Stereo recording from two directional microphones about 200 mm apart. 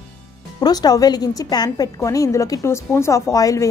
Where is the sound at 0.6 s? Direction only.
20° left (ahead or behind).